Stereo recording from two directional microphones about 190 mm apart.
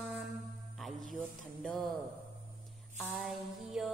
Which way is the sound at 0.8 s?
Centre (ahead or behind).